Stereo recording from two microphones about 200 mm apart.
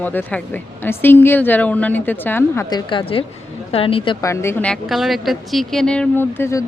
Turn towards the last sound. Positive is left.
turn(degrees=10)  # may be behind; listen again after turning